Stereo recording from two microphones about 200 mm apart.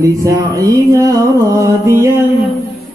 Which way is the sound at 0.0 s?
15° right (ahead or behind).